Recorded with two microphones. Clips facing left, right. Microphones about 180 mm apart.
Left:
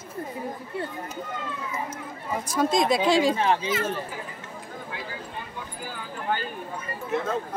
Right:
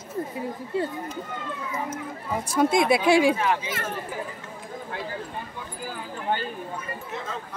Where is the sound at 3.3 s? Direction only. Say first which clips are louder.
Left 2 dB; 30° left (ahead or behind).